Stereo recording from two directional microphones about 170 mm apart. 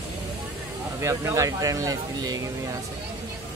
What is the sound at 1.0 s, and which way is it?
Speech, 15° right (ahead or behind).